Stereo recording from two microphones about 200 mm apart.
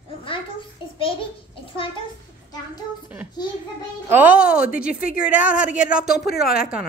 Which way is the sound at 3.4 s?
20° left (ahead or behind).